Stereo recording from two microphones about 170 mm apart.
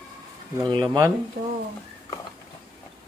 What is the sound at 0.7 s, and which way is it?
Speech, 20° right (ahead or behind).